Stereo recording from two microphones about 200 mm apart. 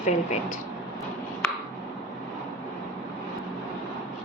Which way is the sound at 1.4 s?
5° left (ahead or behind).